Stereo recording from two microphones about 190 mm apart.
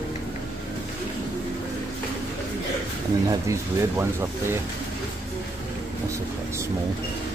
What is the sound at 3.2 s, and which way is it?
Speech, 15° right (ahead or behind).